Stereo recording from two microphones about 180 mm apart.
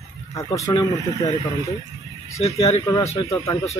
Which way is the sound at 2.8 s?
20° left (ahead or behind).